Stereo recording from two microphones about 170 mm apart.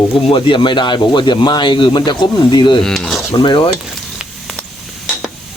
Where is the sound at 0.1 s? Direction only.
30° left (ahead or behind).